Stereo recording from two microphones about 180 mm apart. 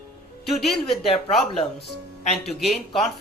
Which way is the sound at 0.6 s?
Centre (ahead or behind).